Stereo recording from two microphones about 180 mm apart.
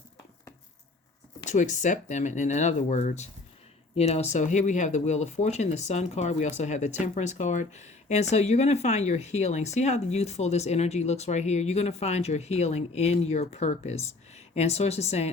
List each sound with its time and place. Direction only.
1.5 s speech: 40° left (ahead or behind)